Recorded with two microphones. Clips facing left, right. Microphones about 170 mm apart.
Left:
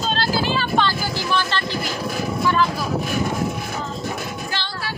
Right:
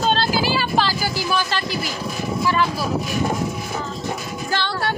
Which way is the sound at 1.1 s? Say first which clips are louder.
Even; 10° right (ahead or behind).